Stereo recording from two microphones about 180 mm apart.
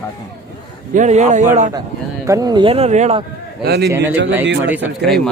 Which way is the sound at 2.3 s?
20° right (ahead or behind).